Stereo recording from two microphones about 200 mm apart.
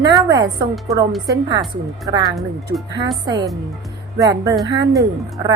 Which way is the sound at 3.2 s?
20° right (ahead or behind).